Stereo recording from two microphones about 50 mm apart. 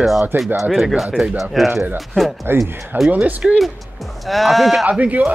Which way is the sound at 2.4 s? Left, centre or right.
Right.